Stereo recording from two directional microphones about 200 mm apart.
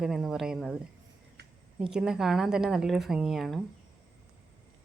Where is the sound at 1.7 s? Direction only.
5° right (ahead or behind).